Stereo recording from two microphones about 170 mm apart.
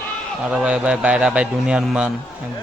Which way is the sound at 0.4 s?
5° right (ahead or behind).